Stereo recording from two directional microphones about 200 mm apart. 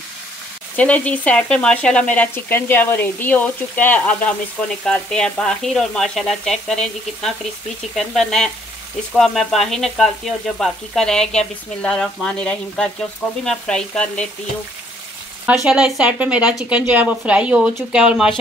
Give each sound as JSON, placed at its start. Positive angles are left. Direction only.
{"t": 0.7, "sound": "speech", "side_deg": 5}
{"t": 4.8, "sound": "frying", "side_deg": 5}
{"t": 15.4, "sound": "frying", "side_deg": -5}